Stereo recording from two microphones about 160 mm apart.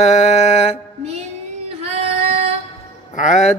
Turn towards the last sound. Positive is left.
turn(degrees=45)  # may be behind; listen again after turning